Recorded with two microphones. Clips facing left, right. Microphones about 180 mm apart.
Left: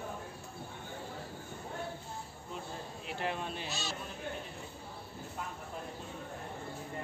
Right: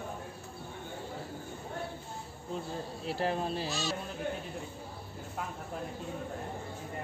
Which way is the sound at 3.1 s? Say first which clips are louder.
Right 5 dB; 35° right (ahead or behind).